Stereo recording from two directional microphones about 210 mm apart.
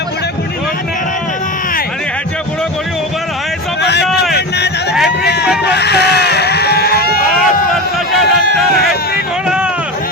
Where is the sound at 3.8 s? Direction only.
55° left (ahead or behind).